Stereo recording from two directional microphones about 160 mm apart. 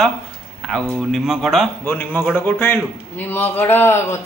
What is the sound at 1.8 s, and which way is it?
A man's voice, 15° left (ahead or behind).